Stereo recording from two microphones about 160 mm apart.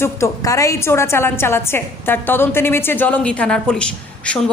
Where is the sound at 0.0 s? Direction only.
20° left (ahead or behind).